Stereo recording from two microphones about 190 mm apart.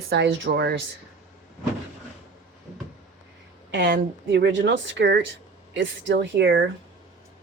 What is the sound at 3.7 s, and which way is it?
A woman's voice, 65° right (ahead or behind).